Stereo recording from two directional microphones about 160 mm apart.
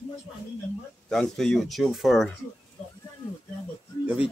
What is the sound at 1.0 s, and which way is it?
Speech, 5° left (ahead or behind).